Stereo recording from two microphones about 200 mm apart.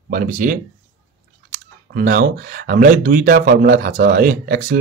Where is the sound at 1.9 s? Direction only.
45° right (ahead or behind).